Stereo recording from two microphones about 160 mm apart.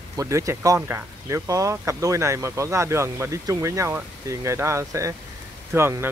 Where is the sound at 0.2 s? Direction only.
20° right (ahead or behind).